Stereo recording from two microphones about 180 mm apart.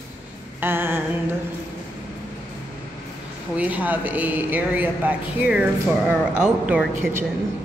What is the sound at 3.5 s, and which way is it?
A woman's voice, 10° right (ahead or behind).